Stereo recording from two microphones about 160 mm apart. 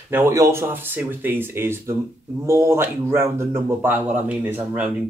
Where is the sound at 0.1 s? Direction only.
15° right (ahead or behind).